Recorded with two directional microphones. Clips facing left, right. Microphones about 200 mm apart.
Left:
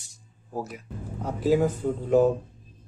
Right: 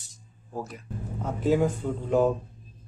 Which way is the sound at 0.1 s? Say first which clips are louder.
Left 2 dB; 10° left (ahead or behind).